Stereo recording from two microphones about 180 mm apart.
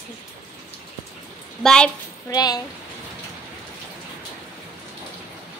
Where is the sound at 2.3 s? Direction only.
20° left (ahead or behind).